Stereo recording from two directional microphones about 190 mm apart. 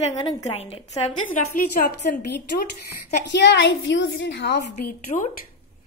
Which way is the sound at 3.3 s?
65° left (ahead or behind).